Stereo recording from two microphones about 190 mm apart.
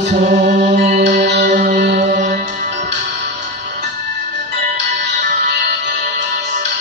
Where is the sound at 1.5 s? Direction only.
40° right (ahead or behind).